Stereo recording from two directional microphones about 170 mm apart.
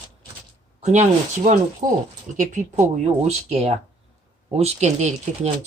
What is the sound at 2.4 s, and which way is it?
Speech, 45° right (ahead or behind).